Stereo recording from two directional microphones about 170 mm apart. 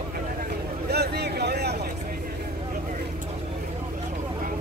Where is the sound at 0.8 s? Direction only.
75° right (ahead or behind).